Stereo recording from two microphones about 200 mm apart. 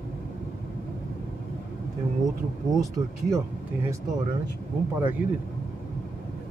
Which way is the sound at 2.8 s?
15° right (ahead or behind).